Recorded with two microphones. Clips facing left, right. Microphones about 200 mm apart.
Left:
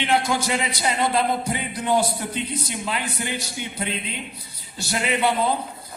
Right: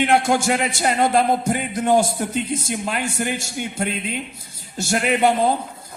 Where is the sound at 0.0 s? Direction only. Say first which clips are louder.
Right 5 dB; 50° right (ahead or behind).